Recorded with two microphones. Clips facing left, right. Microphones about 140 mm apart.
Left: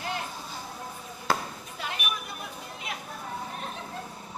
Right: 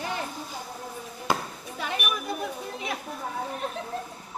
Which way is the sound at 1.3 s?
20° right (ahead or behind).